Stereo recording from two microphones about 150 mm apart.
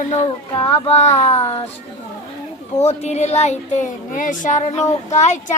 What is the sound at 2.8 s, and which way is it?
Speech, 45° left (ahead or behind).